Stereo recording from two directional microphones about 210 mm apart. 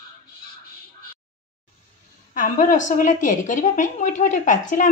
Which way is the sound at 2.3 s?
35° left (ahead or behind).